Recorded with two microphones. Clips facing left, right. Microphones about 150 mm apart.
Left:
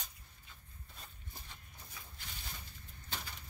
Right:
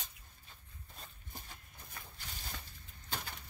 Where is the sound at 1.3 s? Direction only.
50° right (ahead or behind).